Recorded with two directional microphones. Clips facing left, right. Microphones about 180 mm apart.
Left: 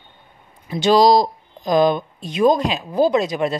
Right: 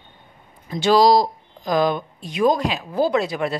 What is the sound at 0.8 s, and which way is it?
Speech, 20° left (ahead or behind).